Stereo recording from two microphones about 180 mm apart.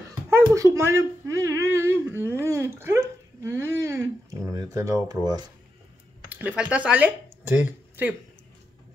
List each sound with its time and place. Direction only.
0.3 s speech: 15° right (ahead or behind)
6.2 s speech: 10° right (ahead or behind)